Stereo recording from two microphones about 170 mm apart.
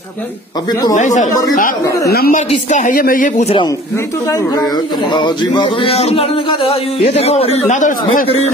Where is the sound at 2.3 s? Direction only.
45° left (ahead or behind).